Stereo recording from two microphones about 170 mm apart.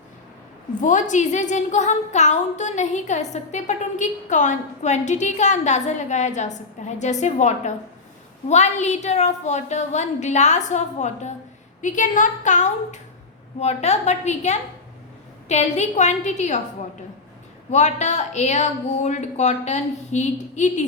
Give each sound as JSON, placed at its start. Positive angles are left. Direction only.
{"t": 0.8, "sound": "a woman's voice", "side_deg": 45}
{"t": 17.7, "sound": "a woman's voice", "side_deg": 40}